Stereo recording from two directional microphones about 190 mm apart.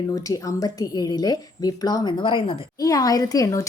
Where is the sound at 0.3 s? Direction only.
20° left (ahead or behind).